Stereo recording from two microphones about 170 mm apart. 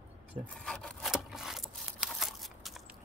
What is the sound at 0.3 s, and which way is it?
Speech, 35° right (ahead or behind).